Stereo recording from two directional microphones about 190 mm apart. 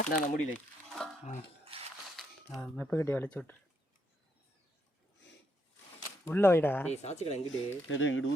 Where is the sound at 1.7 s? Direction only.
30° right (ahead or behind).